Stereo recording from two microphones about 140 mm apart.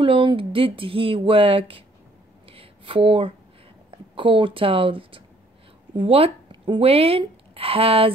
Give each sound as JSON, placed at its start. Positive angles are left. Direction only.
{"t": 0.0, "sound": "speech", "side_deg": -35}
{"t": 2.4, "sound": "a sound", "side_deg": -40}
{"t": 3.9, "sound": "speech", "side_deg": -40}